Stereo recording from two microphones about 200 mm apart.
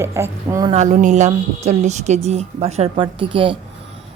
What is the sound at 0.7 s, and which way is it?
Speech, 35° right (ahead or behind).